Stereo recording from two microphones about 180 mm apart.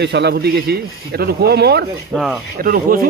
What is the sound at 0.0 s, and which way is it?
Speech, 70° right (ahead or behind).